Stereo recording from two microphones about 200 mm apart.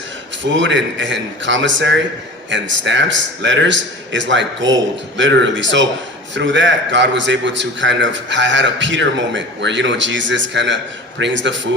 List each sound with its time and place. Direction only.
0.5 s a man's voice: 65° right (ahead or behind)